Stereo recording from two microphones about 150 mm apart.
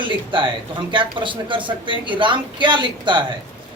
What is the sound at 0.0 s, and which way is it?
A man's voice, 35° right (ahead or behind).